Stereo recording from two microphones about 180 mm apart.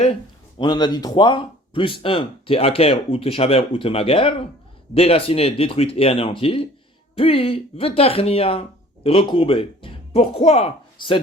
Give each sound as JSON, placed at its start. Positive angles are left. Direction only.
{"t": 0.6, "sound": "speech", "side_deg": 25}